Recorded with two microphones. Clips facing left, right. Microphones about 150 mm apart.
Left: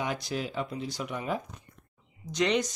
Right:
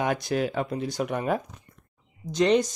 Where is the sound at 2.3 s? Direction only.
35° right (ahead or behind).